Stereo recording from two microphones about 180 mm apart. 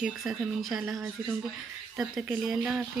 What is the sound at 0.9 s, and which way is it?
Speech, 10° right (ahead or behind).